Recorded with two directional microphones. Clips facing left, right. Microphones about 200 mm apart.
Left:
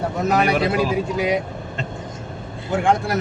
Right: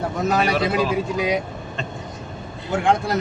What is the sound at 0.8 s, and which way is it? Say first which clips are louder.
Speech: left 1 dB; 20° left (ahead or behind).